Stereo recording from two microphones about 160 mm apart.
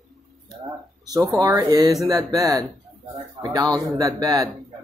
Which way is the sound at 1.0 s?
25° right (ahead or behind).